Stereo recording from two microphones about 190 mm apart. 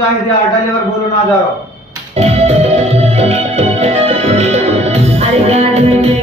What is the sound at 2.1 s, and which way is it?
Music, 35° right (ahead or behind).